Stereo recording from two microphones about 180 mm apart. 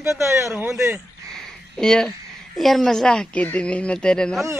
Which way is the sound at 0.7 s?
15° right (ahead or behind).